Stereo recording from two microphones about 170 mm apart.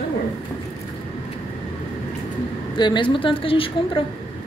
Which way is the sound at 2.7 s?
25° left (ahead or behind).